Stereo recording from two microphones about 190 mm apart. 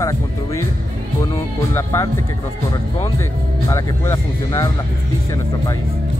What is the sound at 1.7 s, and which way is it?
Speech, 15° left (ahead or behind).